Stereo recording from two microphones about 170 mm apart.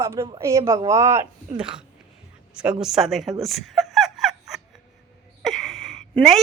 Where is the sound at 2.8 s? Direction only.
Centre (ahead or behind).